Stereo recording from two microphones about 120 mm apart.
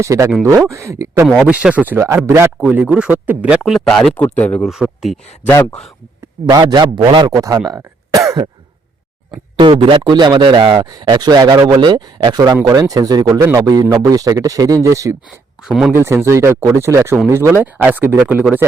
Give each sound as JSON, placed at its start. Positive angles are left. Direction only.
{"t": 0.0, "sound": "speech", "side_deg": -25}
{"t": 1.5, "sound": "speech", "side_deg": -10}
{"t": 2.6, "sound": "speech", "side_deg": -10}
{"t": 3.6, "sound": "speech", "side_deg": 5}
{"t": 4.6, "sound": "speech", "side_deg": 0}
{"t": 6.4, "sound": "speech", "side_deg": -35}
{"t": 7.3, "sound": "speech", "side_deg": -30}
{"t": 9.6, "sound": "speech", "side_deg": -45}
{"t": 15.6, "sound": "speech", "side_deg": -5}
{"t": 15.9, "sound": "speech", "side_deg": -20}